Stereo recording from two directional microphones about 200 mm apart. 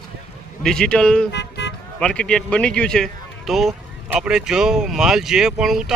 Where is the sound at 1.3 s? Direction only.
60° left (ahead or behind).